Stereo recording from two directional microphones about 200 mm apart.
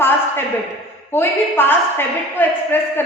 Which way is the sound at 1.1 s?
10° left (ahead or behind).